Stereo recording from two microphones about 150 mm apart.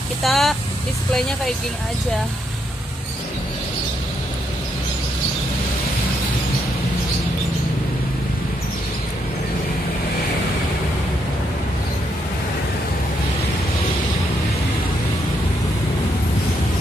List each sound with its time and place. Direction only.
0.2 s speech: centre (ahead or behind)